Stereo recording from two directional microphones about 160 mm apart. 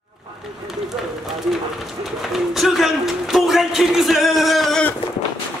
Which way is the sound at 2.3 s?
Centre (ahead or behind).